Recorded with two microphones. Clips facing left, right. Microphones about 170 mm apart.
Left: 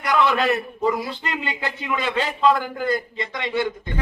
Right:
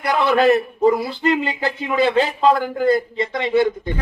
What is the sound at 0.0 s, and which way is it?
A man's voice, 35° right (ahead or behind).